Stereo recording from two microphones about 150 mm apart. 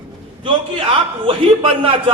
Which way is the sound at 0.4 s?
35° right (ahead or behind).